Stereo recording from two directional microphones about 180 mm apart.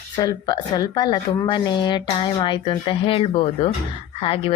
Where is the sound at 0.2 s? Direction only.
20° left (ahead or behind).